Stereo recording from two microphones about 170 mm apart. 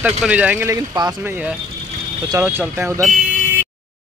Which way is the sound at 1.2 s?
5° right (ahead or behind).